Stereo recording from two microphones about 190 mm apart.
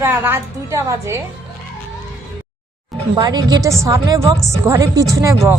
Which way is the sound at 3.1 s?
20° right (ahead or behind).